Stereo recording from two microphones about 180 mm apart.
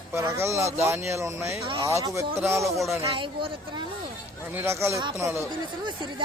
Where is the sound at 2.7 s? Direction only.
Centre (ahead or behind).